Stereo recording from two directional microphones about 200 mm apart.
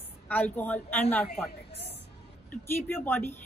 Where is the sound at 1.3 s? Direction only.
30° left (ahead or behind).